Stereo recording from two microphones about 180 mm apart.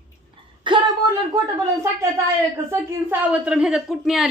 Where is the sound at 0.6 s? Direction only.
25° right (ahead or behind).